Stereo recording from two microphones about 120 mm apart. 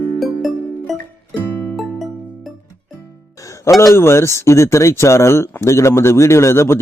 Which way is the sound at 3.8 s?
20° left (ahead or behind).